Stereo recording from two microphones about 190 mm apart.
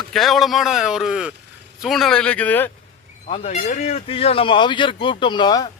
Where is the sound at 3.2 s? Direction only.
35° left (ahead or behind).